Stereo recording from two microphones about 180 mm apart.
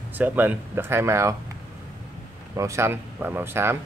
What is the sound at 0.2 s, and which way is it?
Speech, 10° right (ahead or behind).